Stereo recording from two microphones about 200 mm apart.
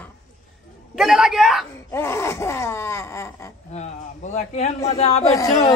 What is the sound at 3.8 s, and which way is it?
Speech, 35° left (ahead or behind).